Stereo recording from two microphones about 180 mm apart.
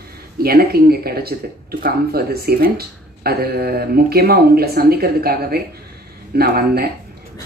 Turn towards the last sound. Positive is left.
turn(degrees=-60)  # may be behind; listen again after turning